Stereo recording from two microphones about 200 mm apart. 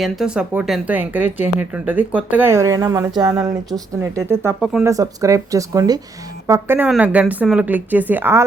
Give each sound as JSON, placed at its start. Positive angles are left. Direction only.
{"t": 0.0, "sound": "speech", "side_deg": -5}